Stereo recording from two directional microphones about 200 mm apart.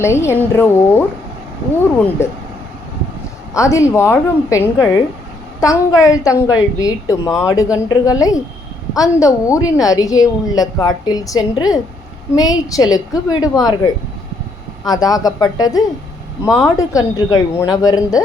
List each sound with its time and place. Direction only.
0.0 s a woman's voice: 15° left (ahead or behind)
3.5 s a woman's voice: 15° left (ahead or behind)